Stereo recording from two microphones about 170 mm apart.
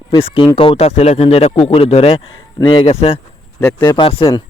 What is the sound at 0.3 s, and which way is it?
A man's voice, 35° left (ahead or behind).